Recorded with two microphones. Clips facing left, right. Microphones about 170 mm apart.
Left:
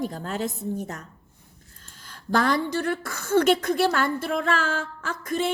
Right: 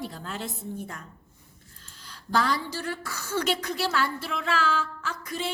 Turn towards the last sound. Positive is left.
turn(degrees=50)  # may be behind; listen again after turning